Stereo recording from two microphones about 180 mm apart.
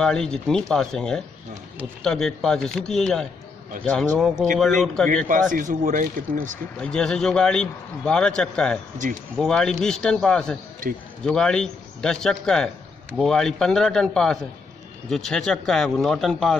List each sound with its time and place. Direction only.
0.0 s a man's voice: 5° left (ahead or behind)
5.3 s speech: 45° right (ahead or behind)
6.8 s a man's voice: 5° left (ahead or behind)
10.8 s speech: 50° right (ahead or behind)
11.2 s a man's voice: 5° left (ahead or behind)